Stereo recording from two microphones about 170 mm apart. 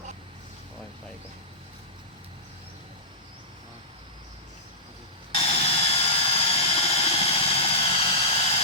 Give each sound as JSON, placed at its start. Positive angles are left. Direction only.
{"t": 5.3, "sound": "engine", "side_deg": 35}